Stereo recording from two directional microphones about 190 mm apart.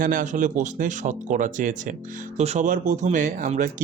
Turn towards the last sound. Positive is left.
turn(degrees=-45)  # may be behind; listen again after turning